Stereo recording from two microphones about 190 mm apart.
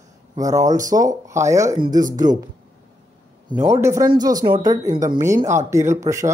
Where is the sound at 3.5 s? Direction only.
15° right (ahead or behind).